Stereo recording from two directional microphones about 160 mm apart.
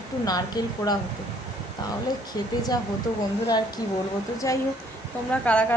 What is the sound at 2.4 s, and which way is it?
A woman's voice, 25° left (ahead or behind).